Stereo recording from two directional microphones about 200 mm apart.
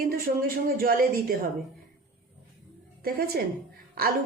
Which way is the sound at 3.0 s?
50° right (ahead or behind).